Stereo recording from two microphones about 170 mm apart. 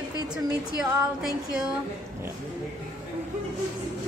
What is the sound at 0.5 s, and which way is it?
Speech, 5° right (ahead or behind).